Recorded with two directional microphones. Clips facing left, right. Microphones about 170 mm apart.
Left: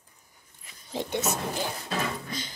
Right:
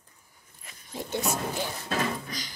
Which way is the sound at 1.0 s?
20° left (ahead or behind).